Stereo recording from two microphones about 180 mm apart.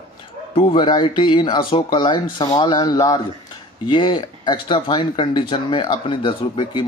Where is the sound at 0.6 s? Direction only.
30° left (ahead or behind).